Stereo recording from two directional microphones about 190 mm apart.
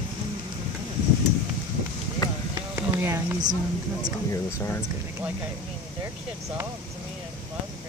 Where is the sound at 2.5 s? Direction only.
15° right (ahead or behind).